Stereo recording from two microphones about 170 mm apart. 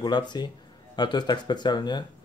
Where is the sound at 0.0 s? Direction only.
25° left (ahead or behind).